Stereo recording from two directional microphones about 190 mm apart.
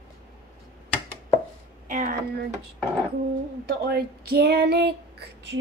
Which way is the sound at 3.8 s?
55° right (ahead or behind).